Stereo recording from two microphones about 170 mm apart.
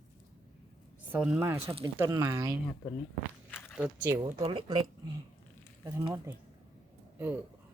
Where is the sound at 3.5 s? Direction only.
Centre (ahead or behind).